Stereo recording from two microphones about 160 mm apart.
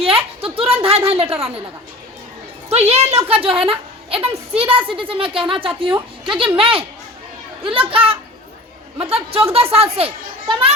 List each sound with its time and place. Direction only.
0.0 s speech: 35° right (ahead or behind)
2.6 s speech: 40° right (ahead or behind)